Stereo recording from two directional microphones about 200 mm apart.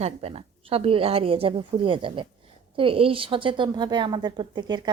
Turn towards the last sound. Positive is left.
turn(degrees=-20)  # may be behind; listen again after turning